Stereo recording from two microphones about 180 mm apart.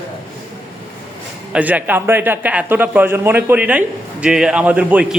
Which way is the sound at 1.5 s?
10° right (ahead or behind).